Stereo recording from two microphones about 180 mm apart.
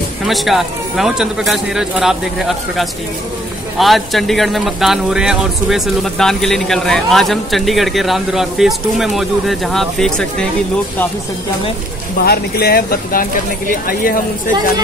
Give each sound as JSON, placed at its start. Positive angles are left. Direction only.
{"t": 0.3, "sound": "speech", "side_deg": 0}
{"t": 12.3, "sound": "speech", "side_deg": 60}